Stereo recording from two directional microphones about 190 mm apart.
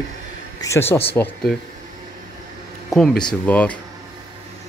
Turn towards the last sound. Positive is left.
turn(degrees=10)  # may be behind; listen again after turning